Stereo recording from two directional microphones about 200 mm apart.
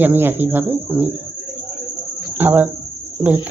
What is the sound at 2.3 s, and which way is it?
Speech, 10° right (ahead or behind).